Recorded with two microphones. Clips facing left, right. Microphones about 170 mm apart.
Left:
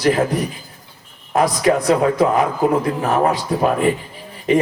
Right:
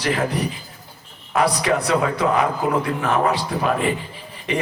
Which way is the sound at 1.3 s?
45° left (ahead or behind).